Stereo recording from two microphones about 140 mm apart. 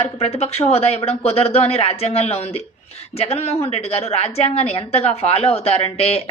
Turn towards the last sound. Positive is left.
turn(degrees=45)  # may be behind; listen again after turning